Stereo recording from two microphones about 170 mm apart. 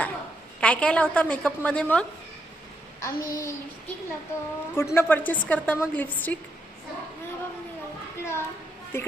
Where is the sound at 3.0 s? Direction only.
15° left (ahead or behind).